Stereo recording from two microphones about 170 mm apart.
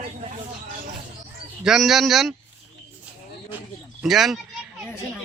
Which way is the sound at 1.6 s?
Centre (ahead or behind).